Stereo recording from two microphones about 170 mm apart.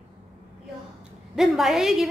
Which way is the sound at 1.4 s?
Centre (ahead or behind).